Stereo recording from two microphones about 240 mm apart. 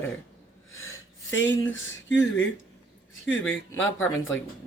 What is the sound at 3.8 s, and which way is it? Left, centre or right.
Speech, left.